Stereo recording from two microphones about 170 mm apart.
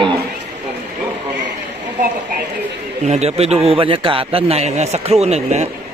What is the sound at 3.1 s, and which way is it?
A man's voice, 40° right (ahead or behind).